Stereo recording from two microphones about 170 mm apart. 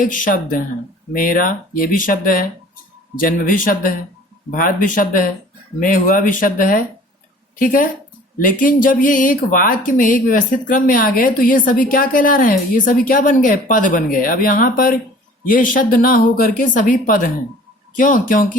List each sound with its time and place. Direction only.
0.0 s a woman's voice: 50° left (ahead or behind)